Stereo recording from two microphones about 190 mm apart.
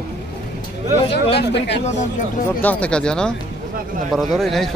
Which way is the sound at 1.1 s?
60° left (ahead or behind).